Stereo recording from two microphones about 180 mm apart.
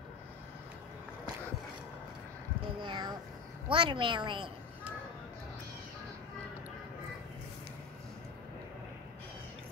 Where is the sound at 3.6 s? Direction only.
30° right (ahead or behind).